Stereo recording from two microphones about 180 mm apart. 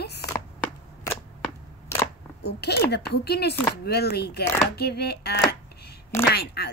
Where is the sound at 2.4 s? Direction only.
65° left (ahead or behind).